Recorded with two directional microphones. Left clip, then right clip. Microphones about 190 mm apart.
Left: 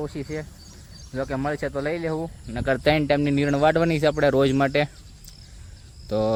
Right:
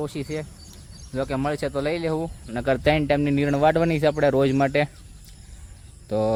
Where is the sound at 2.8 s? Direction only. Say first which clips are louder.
Left 2 dB; 5° left (ahead or behind).